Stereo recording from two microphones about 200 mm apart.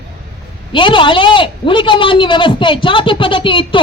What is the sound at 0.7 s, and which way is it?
A man's voice, 25° left (ahead or behind).